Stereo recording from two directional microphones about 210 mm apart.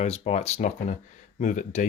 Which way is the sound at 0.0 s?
30° left (ahead or behind).